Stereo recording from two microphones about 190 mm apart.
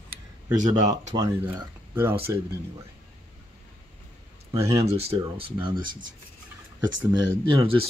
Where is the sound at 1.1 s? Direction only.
20° right (ahead or behind).